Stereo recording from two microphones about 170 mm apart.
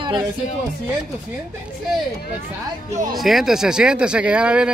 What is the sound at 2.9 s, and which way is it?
Speech, 50° right (ahead or behind).